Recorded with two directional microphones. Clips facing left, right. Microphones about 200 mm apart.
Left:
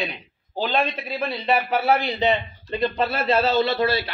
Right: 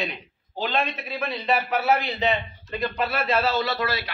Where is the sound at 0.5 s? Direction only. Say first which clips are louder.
Left 3 dB; 35° left (ahead or behind).